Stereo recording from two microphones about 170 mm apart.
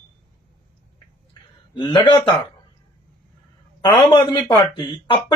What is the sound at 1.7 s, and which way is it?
Speech, 25° left (ahead or behind).